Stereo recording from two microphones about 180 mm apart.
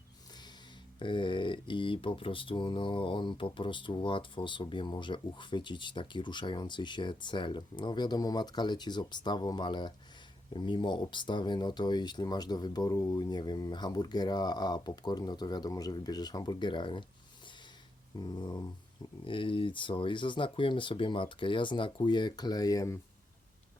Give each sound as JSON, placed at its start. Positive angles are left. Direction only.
{"t": 0.9, "sound": "speech", "side_deg": 25}
{"t": 18.2, "sound": "speech", "side_deg": 20}